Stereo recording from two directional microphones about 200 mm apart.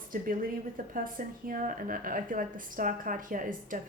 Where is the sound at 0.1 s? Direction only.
45° right (ahead or behind).